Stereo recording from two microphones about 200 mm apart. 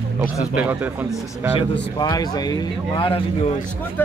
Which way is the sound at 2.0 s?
20° left (ahead or behind).